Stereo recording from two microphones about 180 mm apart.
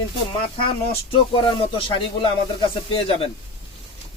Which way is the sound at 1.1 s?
30° left (ahead or behind).